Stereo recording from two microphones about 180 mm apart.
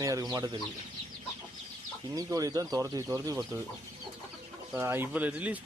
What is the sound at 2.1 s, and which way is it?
Speech, 20° right (ahead or behind).